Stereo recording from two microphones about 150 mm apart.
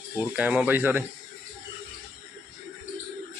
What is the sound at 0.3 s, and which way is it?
Speech, 10° right (ahead or behind).